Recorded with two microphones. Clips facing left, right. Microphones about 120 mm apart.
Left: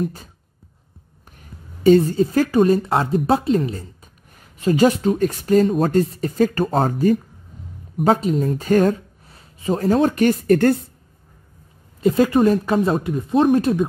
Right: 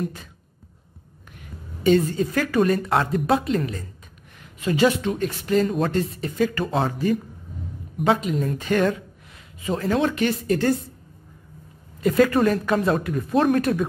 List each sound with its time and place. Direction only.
0.0 s speech: 35° left (ahead or behind)
1.3 s a woman's voice: 40° left (ahead or behind); by 10.8 s 55° left (ahead or behind)
12.0 s speech: 25° left (ahead or behind)